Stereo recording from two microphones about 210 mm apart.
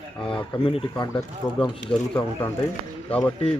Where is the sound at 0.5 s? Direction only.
25° left (ahead or behind).